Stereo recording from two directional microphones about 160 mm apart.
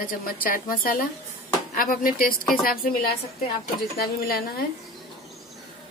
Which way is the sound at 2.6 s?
70° left (ahead or behind).